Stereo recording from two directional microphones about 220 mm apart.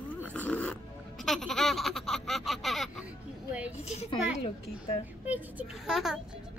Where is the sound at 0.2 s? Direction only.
5° left (ahead or behind).